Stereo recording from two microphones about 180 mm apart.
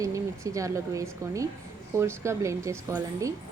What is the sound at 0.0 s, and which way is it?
A woman's voice, 20° right (ahead or behind).